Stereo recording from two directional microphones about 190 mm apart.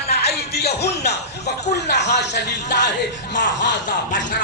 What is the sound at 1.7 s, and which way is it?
Speech, 60° left (ahead or behind).